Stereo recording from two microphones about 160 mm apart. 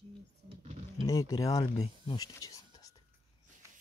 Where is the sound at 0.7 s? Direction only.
40° right (ahead or behind).